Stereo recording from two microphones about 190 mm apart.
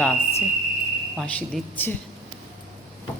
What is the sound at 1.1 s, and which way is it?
Speech, 5° left (ahead or behind).